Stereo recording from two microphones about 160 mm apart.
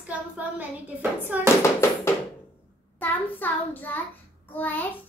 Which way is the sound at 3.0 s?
10° left (ahead or behind).